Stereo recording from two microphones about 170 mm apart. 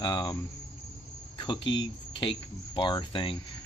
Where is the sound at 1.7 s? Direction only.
30° left (ahead or behind).